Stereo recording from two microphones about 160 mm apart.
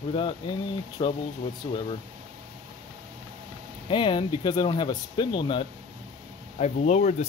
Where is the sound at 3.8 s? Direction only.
30° left (ahead or behind).